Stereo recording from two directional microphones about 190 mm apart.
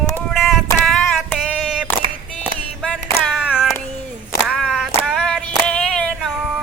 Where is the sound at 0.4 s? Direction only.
Centre (ahead or behind).